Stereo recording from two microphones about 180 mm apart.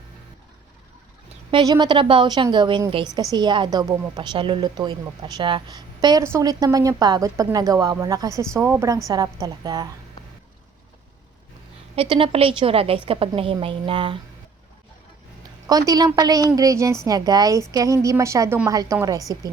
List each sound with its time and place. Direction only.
1.5 s a woman's voice: 25° right (ahead or behind)
11.9 s a woman's voice: 30° right (ahead or behind)
15.9 s a woman's voice: 20° right (ahead or behind)